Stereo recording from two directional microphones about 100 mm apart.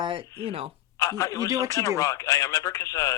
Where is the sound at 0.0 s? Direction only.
60° right (ahead or behind).